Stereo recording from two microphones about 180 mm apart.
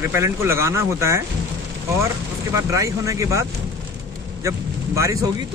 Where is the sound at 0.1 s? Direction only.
15° right (ahead or behind).